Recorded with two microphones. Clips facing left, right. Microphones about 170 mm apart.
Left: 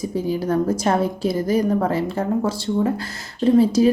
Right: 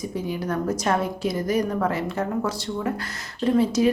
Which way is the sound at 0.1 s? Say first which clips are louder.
Left 7 dB; 30° left (ahead or behind).